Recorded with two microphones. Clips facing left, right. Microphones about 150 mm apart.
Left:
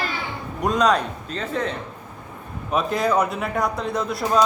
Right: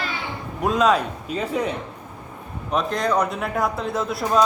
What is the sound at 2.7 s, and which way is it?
A man's voice, 5° left (ahead or behind).